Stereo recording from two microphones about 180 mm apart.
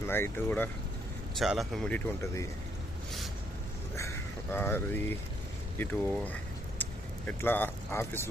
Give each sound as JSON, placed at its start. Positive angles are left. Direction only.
{"t": 0.0, "sound": "speech", "side_deg": 10}
{"t": 1.4, "sound": "speech", "side_deg": 0}
{"t": 2.2, "sound": "speech", "side_deg": 15}
{"t": 3.9, "sound": "speech", "side_deg": 15}